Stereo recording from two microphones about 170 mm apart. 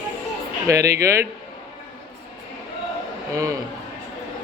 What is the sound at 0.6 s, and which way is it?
Speech, 20° right (ahead or behind).